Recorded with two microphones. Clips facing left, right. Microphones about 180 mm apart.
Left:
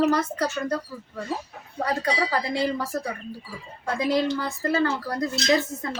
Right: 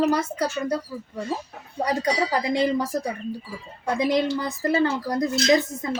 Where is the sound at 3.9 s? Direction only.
20° right (ahead or behind).